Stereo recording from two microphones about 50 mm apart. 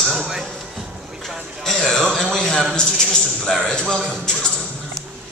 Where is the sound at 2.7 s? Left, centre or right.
Centre.